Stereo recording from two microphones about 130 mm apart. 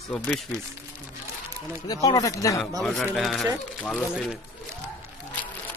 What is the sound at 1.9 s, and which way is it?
Speech, 30° left (ahead or behind).